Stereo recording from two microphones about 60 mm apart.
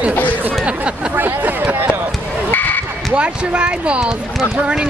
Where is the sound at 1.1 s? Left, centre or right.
Right.